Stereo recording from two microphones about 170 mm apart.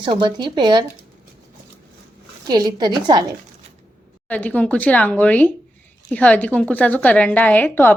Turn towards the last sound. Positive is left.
turn(degrees=10)  # may be behind; listen again after turning